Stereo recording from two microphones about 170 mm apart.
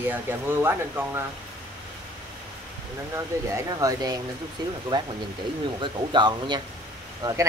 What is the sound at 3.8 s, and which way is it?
Speech, 20° right (ahead or behind).